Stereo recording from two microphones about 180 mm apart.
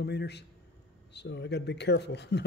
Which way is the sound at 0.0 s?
65° left (ahead or behind).